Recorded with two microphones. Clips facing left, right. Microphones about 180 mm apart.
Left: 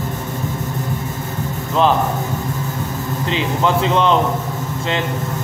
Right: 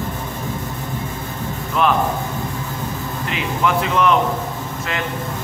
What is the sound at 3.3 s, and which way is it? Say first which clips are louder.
Speech: left 2 dB; 30° left (ahead or behind).